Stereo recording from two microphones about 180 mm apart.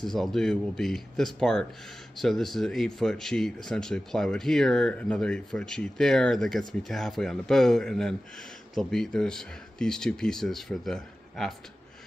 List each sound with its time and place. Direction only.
0.0 s a man's voice: centre (ahead or behind)